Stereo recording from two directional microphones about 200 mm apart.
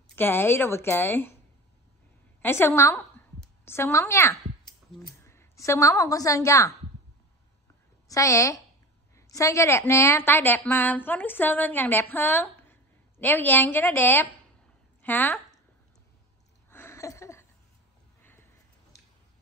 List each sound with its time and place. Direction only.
0.1 s a woman's voice: 10° left (ahead or behind)
2.4 s a woman's voice: 10° left (ahead or behind)
8.1 s a woman's voice: 15° left (ahead or behind)
16.7 s a sound: 15° left (ahead or behind)